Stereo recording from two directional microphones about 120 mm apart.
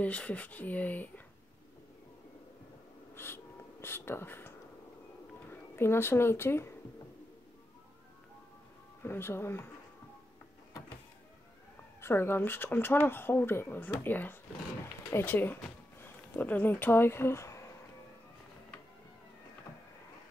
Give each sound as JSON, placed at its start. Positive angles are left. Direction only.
{"t": 0.0, "sound": "speech", "side_deg": 10}
{"t": 3.2, "sound": "wheeze", "side_deg": 20}
{"t": 3.8, "sound": "speech", "side_deg": 20}
{"t": 9.0, "sound": "speech", "side_deg": 20}
{"t": 12.0, "sound": "speech", "side_deg": 20}